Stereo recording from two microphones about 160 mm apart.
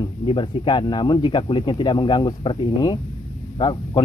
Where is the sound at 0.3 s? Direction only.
30° left (ahead or behind).